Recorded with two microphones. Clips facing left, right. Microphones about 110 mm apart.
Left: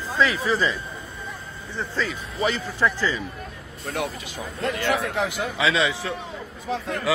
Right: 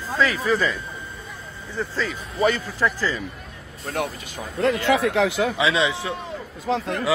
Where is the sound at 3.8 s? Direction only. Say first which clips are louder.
Right 1 dB; 45° right (ahead or behind).